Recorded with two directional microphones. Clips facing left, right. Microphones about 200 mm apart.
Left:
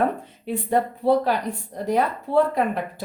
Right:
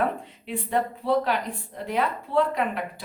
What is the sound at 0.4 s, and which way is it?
Speech, 40° left (ahead or behind).